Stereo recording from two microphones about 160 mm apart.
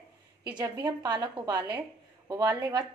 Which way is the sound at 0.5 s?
25° right (ahead or behind).